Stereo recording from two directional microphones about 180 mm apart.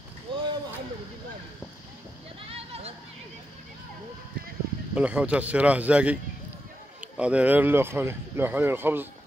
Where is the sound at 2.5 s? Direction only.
35° right (ahead or behind).